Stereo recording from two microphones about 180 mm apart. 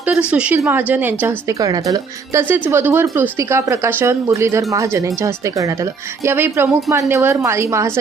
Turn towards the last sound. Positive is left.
turn(degrees=-15)  # may be behind; listen again after turning